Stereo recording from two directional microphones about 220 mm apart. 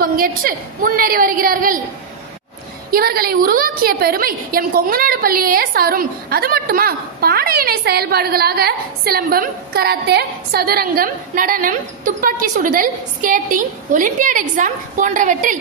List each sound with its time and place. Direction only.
0.0 s a woman's voice: 40° right (ahead or behind)
2.9 s a woman's voice: 45° right (ahead or behind)